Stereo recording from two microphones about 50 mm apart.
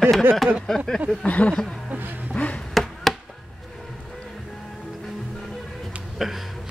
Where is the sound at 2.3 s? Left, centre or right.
Left.